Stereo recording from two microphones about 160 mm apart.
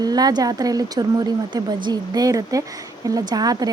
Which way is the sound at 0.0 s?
25° right (ahead or behind).